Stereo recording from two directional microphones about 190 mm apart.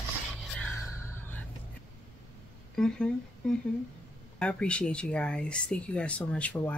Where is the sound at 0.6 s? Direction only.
15° left (ahead or behind).